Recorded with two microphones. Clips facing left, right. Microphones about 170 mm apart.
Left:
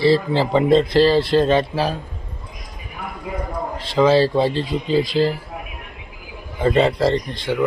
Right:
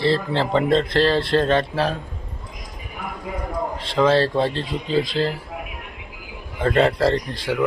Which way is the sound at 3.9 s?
5° left (ahead or behind).